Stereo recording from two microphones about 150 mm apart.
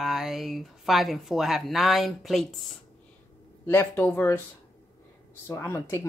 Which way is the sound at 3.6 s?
15° left (ahead or behind).